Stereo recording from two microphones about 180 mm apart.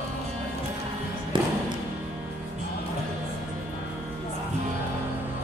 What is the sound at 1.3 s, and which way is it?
Music, 25° right (ahead or behind).